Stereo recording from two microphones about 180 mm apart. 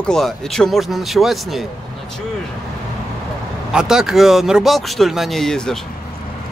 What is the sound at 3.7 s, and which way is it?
Speech, 5° right (ahead or behind).